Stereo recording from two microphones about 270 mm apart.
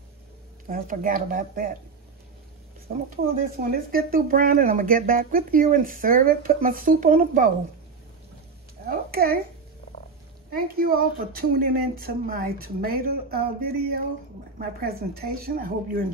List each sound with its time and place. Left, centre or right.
0.7 s speech: right
2.9 s speech: right
8.8 s a woman's voice: right
10.5 s speech: right